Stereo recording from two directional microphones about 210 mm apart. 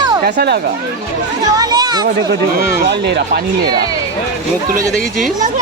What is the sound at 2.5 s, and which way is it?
Speech, 50° right (ahead or behind).